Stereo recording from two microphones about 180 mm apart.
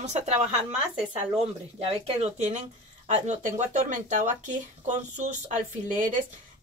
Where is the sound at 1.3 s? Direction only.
35° right (ahead or behind).